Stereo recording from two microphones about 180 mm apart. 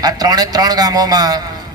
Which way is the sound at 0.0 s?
20° right (ahead or behind).